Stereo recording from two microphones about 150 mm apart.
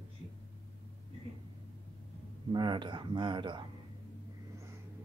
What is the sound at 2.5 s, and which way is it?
Speech, 30° right (ahead or behind).